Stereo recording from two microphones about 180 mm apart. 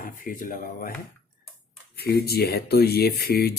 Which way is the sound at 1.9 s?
60° left (ahead or behind).